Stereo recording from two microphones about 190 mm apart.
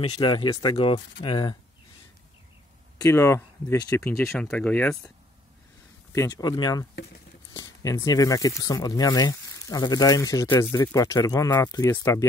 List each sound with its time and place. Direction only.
0.0 s speech: 25° left (ahead or behind)
3.0 s speech: 15° left (ahead or behind)
4.2 s speech: 5° left (ahead or behind)
6.1 s speech: 20° left (ahead or behind)